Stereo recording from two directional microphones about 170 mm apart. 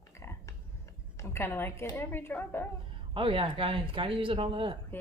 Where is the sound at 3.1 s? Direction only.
30° right (ahead or behind).